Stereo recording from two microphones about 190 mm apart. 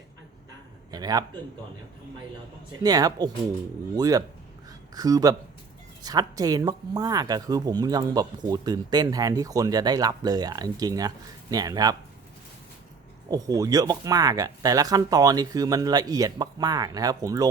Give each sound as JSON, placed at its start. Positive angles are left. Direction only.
{"t": 0.9, "sound": "a man's voice", "side_deg": -20}
{"t": 2.8, "sound": "speech", "side_deg": -20}
{"t": 13.3, "sound": "speech", "side_deg": -20}